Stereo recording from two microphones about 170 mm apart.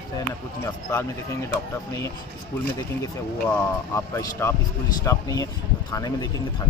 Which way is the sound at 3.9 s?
15° left (ahead or behind).